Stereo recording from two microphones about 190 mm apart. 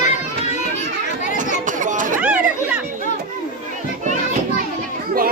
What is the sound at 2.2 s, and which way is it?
Chatter, 5° right (ahead or behind).